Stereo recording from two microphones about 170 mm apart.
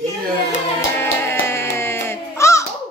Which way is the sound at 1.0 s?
15° left (ahead or behind).